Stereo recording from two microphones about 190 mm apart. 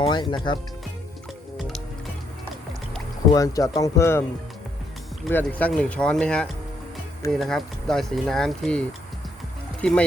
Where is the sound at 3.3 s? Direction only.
15° left (ahead or behind).